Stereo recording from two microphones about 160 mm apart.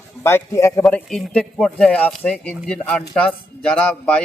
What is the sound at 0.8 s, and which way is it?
Speech, centre (ahead or behind).